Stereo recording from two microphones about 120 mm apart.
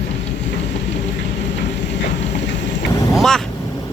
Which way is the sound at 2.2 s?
70° left (ahead or behind).